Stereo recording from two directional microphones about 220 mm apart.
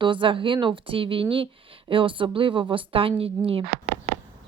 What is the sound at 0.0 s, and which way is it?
A woman's voice, 20° right (ahead or behind).